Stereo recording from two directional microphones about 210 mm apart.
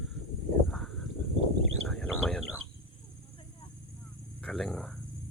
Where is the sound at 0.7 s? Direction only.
Centre (ahead or behind).